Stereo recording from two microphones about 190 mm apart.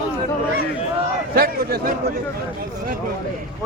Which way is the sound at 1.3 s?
50° right (ahead or behind).